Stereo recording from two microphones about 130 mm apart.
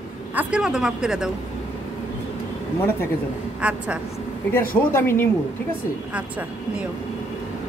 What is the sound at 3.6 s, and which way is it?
Speech, 10° right (ahead or behind).